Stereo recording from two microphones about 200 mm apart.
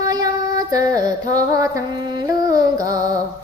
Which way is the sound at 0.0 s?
20° right (ahead or behind).